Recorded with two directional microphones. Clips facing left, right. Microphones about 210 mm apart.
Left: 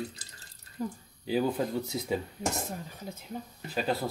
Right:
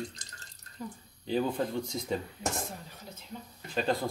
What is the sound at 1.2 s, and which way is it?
Speech, 5° left (ahead or behind).